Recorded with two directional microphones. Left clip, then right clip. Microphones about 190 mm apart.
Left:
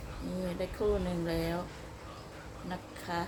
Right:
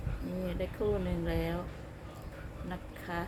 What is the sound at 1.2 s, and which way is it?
Speech, 15° left (ahead or behind).